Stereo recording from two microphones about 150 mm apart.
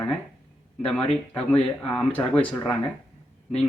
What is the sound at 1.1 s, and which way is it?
Speech, 5° left (ahead or behind).